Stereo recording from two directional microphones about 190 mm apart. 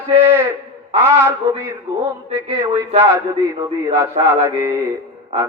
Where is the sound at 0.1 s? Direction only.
10° right (ahead or behind).